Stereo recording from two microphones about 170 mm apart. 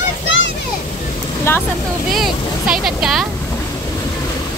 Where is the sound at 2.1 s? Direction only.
Centre (ahead or behind).